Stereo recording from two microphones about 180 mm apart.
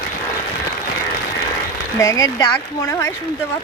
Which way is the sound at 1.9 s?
20° left (ahead or behind).